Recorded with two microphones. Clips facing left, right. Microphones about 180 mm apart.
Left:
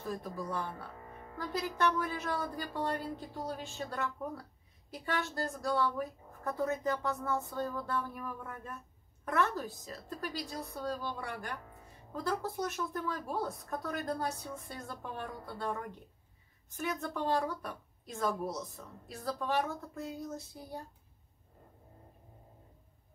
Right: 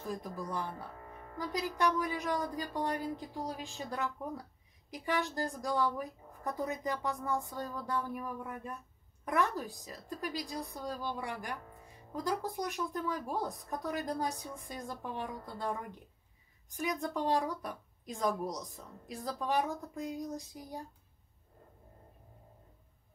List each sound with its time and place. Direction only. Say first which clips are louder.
0.0 s a woman's voice: left 1 dB; 15° right (ahead or behind)
16.6 s a woman's voice: right 1 dB; 15° right (ahead or behind)